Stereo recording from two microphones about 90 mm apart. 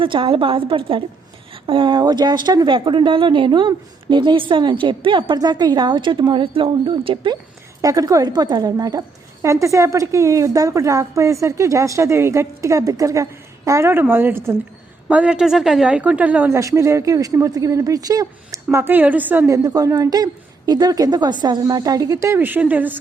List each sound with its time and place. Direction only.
0.0 s a woman's voice: 75° right (ahead or behind); by 2.7 s 50° right (ahead or behind)
2.7 s a woman's voice: 70° right (ahead or behind)
5.4 s a woman's voice: 50° right (ahead or behind); by 7.3 s 70° right (ahead or behind)
7.8 s a woman's voice: 40° right (ahead or behind)
15.1 s speech: 15° right (ahead or behind)
16.5 s a woman's voice: 35° right (ahead or behind)
19.5 s a woman's voice: 45° right (ahead or behind)
22.4 s speech: 20° right (ahead or behind)